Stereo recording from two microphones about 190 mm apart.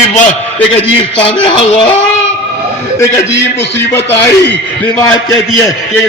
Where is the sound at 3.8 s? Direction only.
10° left (ahead or behind).